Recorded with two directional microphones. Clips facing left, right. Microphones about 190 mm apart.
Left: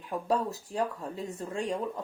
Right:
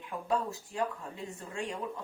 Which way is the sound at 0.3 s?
40° left (ahead or behind).